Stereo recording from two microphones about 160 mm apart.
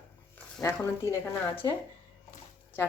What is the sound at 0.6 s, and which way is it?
Speech, 20° left (ahead or behind).